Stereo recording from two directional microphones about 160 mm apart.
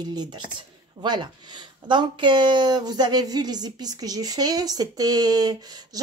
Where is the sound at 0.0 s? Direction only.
25° right (ahead or behind).